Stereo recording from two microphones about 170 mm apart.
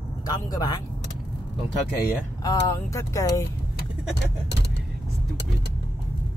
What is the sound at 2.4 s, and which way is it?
Speech, 20° left (ahead or behind).